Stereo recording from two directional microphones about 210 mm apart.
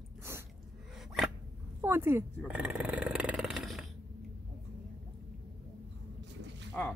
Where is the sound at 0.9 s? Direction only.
Centre (ahead or behind).